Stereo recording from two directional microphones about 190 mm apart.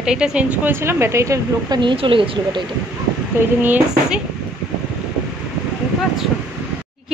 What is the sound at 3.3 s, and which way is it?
Speech, 10° right (ahead or behind).